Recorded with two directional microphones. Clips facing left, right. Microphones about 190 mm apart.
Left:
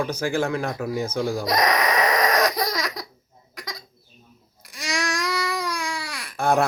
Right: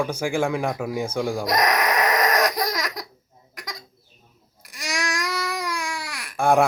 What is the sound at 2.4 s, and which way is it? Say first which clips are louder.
Baby cry: even; 15° right (ahead or behind).